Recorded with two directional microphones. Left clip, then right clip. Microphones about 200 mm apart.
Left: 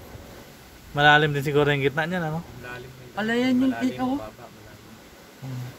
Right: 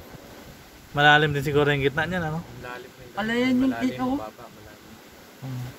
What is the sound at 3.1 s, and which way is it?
Speech, 55° left (ahead or behind).